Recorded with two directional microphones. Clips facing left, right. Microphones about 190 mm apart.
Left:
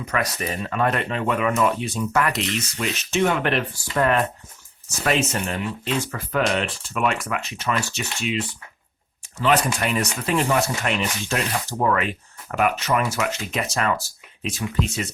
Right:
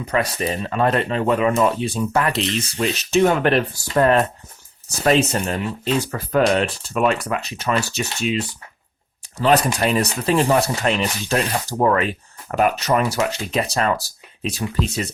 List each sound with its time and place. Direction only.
0.0 s speech: 30° right (ahead or behind)